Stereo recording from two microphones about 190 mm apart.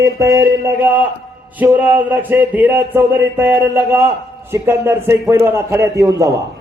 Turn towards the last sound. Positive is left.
turn(degrees=-15)  # may be behind; listen again after turning